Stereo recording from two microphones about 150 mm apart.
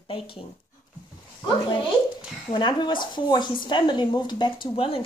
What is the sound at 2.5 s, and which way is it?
A woman's voice, 35° left (ahead or behind).